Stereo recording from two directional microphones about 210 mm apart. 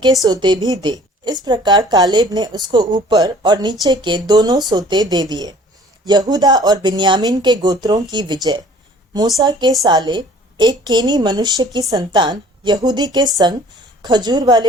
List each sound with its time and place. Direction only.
0.3 s a woman's voice: 20° right (ahead or behind)